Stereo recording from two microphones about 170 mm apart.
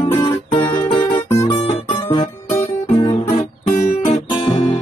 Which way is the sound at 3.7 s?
50° left (ahead or behind).